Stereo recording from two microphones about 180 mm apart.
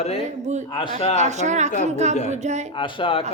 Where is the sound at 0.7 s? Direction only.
25° left (ahead or behind).